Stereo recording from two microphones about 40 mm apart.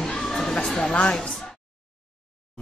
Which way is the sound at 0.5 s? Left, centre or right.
Left.